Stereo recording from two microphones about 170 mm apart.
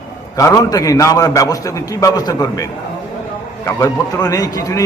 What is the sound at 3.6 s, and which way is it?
A man's voice, 20° left (ahead or behind).